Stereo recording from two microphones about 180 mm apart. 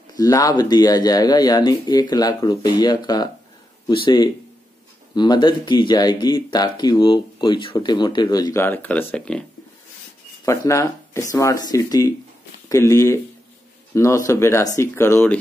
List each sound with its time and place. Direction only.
0.1 s speech: 20° left (ahead or behind)
10.4 s speech: 15° left (ahead or behind)